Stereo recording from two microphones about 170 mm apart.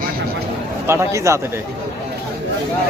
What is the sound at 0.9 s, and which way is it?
Speech, 15° right (ahead or behind).